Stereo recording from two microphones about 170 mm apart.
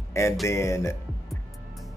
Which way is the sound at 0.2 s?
15° left (ahead or behind).